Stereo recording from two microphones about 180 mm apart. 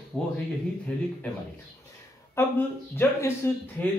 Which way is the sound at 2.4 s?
10° left (ahead or behind).